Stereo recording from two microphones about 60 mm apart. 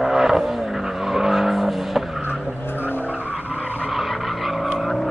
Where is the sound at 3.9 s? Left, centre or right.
Centre.